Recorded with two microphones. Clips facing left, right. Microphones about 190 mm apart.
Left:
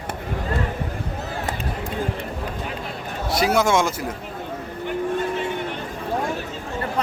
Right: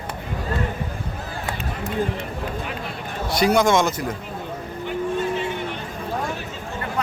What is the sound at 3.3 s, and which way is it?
Speech, 5° left (ahead or behind).